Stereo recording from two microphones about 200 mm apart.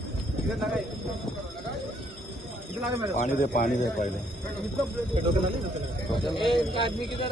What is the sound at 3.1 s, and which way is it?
Speech, 40° left (ahead or behind).